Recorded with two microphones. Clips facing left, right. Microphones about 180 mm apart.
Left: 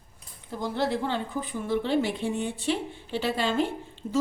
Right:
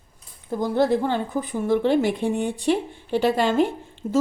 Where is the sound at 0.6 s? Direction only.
50° right (ahead or behind).